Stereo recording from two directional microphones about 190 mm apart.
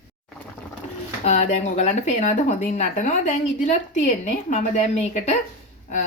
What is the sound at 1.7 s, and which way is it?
A woman's voice, 35° left (ahead or behind).